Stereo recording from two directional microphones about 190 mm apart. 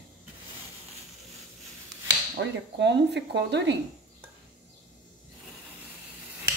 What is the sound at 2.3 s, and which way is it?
Speech, 65° right (ahead or behind).